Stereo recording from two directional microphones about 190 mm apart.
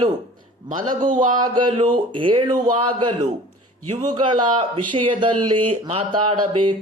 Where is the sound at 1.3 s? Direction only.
20° right (ahead or behind).